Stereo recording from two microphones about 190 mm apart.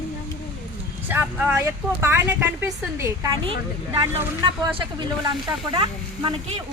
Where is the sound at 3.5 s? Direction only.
25° right (ahead or behind).